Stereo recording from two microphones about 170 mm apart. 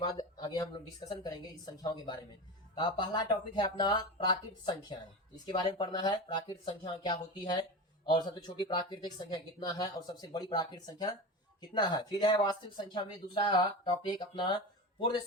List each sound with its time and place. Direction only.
0.3 s speech: 25° left (ahead or behind)